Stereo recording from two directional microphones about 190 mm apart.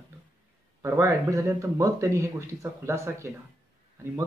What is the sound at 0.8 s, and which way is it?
A man's voice, 15° right (ahead or behind).